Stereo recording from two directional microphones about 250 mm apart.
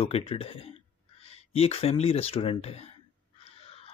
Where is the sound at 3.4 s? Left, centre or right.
Left.